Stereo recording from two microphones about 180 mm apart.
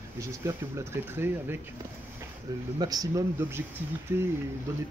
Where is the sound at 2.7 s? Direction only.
20° right (ahead or behind).